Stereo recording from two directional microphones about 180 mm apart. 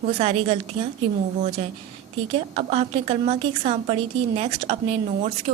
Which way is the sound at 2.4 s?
35° right (ahead or behind).